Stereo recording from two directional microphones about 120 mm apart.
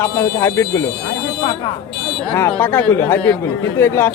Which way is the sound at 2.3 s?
20° left (ahead or behind).